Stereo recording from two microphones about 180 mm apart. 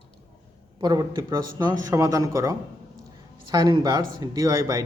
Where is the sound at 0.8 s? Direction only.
20° right (ahead or behind).